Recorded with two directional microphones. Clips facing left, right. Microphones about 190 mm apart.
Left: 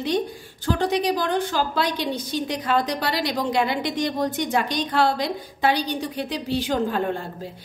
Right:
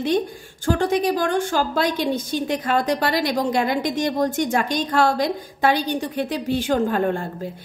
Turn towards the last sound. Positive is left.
turn(degrees=-50)  # may be behind; listen again after turning